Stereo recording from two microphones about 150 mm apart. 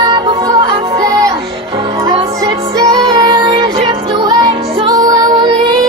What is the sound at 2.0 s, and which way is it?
Music, 35° right (ahead or behind).